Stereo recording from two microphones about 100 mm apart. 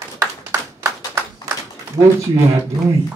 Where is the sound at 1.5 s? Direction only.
35° right (ahead or behind).